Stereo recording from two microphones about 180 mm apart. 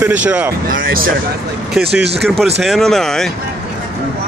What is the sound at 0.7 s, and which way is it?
Speech, 55° right (ahead or behind).